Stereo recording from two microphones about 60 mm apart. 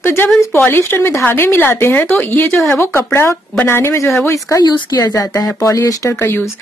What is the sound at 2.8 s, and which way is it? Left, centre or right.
Speech, left.